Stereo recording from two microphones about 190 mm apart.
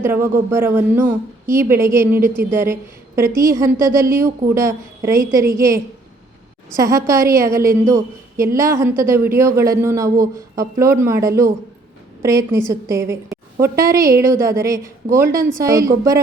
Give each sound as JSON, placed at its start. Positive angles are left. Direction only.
{"t": 0.0, "sound": "a man's voice", "side_deg": -10}